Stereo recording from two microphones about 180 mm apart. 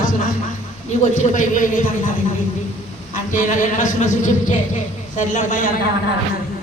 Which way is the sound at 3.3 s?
45° left (ahead or behind).